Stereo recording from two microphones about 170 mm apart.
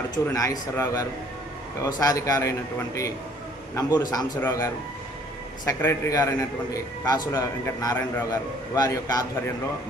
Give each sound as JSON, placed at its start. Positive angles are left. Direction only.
{"t": 0.3, "sound": "a man's voice", "side_deg": 20}